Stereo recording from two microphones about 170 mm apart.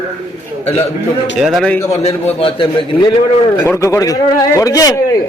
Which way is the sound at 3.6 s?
15° left (ahead or behind).